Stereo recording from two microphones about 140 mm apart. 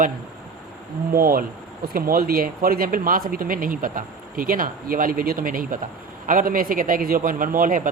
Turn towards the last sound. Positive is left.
turn(degrees=-75)  # may be behind; listen again after turning